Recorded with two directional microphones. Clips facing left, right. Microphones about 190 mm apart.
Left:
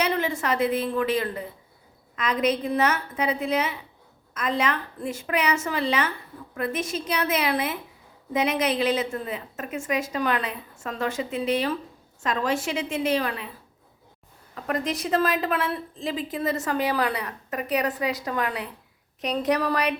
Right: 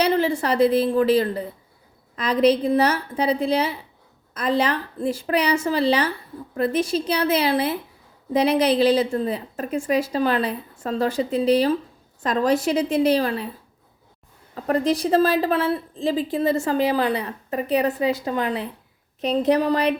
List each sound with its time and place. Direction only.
0.0 s a woman's voice: 30° right (ahead or behind)
14.5 s a woman's voice: 30° right (ahead or behind)